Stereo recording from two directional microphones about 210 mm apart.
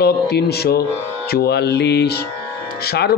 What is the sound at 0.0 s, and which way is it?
Mantra, 50° left (ahead or behind).